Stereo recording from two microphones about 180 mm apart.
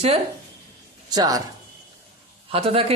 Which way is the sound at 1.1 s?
20° right (ahead or behind).